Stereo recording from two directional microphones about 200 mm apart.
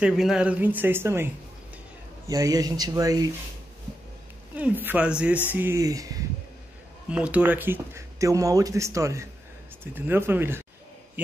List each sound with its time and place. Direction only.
0.0 s speech: centre (ahead or behind)
4.6 s speech: 10° right (ahead or behind)
7.1 s speech: 5° right (ahead or behind)